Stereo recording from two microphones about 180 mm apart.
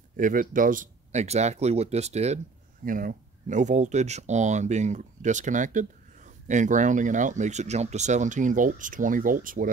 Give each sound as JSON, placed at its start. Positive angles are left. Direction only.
{"t": 0.1, "sound": "speech", "side_deg": -50}